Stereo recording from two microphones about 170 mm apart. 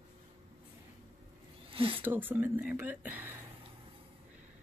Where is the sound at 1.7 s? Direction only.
30° right (ahead or behind).